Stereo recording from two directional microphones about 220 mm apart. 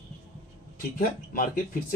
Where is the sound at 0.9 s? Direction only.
40° left (ahead or behind).